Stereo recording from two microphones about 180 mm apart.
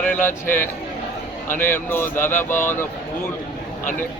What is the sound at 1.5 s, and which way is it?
Speech, 50° left (ahead or behind).